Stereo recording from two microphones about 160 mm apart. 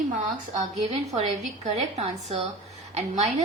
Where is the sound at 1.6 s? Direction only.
45° right (ahead or behind).